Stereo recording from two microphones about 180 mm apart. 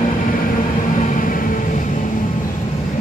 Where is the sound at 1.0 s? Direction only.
45° left (ahead or behind).